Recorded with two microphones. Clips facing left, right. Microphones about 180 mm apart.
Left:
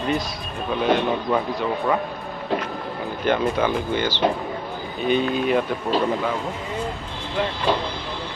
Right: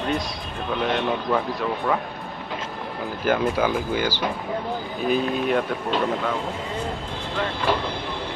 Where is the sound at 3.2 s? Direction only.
5° right (ahead or behind).